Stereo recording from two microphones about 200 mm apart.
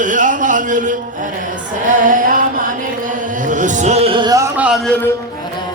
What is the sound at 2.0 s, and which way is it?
Speech, 40° right (ahead or behind).